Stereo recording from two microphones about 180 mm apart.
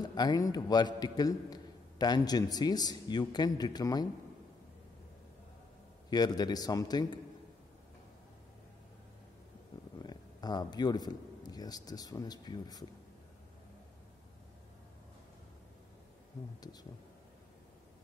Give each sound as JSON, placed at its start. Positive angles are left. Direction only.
{"t": 0.0, "sound": "a man's voice", "side_deg": 25}
{"t": 6.0, "sound": "a man's voice", "side_deg": 20}
{"t": 10.0, "sound": "speech", "side_deg": 20}